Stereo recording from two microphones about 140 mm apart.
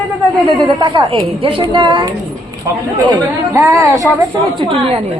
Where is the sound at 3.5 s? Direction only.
20° right (ahead or behind).